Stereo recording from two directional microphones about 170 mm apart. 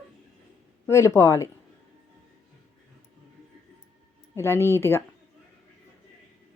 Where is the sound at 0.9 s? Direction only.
15° left (ahead or behind).